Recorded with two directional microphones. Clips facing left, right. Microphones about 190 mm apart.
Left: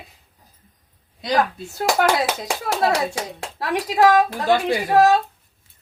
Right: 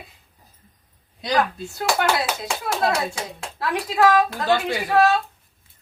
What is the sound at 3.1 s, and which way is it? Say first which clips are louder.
Speech: left 3 dB; 35° left (ahead or behind).